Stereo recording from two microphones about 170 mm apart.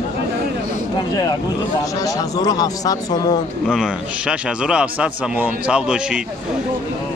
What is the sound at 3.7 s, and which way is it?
A man's voice, 5° right (ahead or behind).